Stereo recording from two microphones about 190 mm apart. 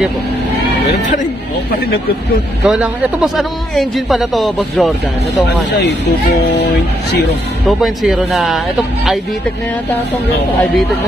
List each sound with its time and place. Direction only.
2.6 s a man's voice: 5° right (ahead or behind)
5.7 s speech: 65° left (ahead or behind)
7.6 s a man's voice: centre (ahead or behind)